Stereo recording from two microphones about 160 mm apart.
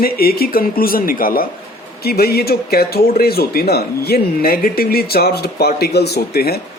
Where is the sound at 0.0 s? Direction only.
70° left (ahead or behind).